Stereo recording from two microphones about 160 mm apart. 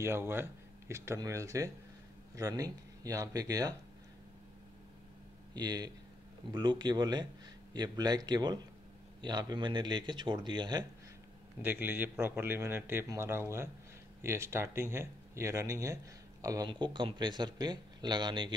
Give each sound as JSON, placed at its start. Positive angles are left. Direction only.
{"t": 0.0, "sound": "a man's voice", "side_deg": -15}
{"t": 5.5, "sound": "speech", "side_deg": -25}
{"t": 11.6, "sound": "a man's voice", "side_deg": -10}